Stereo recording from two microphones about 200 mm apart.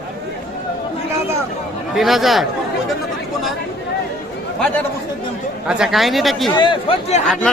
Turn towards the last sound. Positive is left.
turn(degrees=30)  # may be behind; listen again after turning